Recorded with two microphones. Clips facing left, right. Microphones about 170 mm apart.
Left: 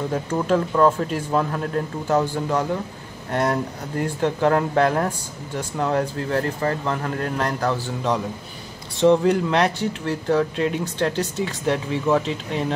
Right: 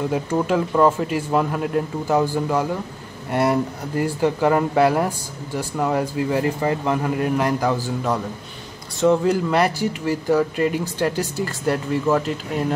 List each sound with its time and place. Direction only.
0.1 s speech: 10° right (ahead or behind)